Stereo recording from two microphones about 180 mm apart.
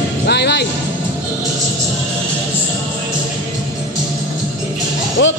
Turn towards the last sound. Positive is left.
turn(degrees=85)